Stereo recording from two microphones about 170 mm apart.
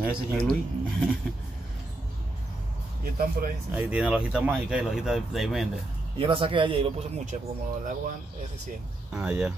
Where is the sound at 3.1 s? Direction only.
60° right (ahead or behind).